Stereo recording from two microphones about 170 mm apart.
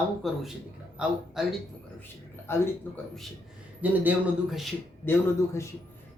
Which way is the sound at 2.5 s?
15° left (ahead or behind).